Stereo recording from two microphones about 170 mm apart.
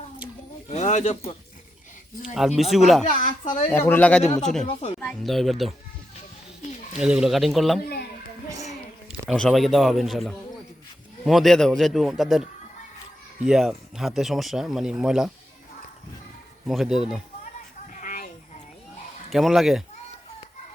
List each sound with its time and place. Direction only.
0.7 s speech: 45° left (ahead or behind)
2.3 s speech: centre (ahead or behind)
3.0 s speech: 50° left (ahead or behind)
3.7 s speech: 15° left (ahead or behind)
7.0 s speech: 5° right (ahead or behind)
9.0 s speech: 5° left (ahead or behind)
13.5 s speech: 5° right (ahead or behind)
16.6 s speech: centre (ahead or behind)
17.9 s a sound: 50° left (ahead or behind)
19.3 s speech: centre (ahead or behind)